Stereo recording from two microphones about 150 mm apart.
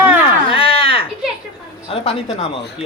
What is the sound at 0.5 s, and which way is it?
Speech, 40° left (ahead or behind).